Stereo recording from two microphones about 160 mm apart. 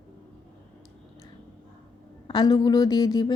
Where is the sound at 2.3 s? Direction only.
25° left (ahead or behind).